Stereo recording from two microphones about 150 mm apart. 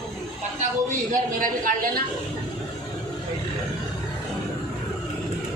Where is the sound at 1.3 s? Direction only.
65° right (ahead or behind).